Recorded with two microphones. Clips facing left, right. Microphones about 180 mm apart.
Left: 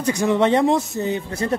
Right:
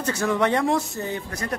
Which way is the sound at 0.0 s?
15° left (ahead or behind).